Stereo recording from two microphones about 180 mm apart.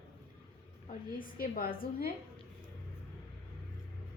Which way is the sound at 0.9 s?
50° left (ahead or behind).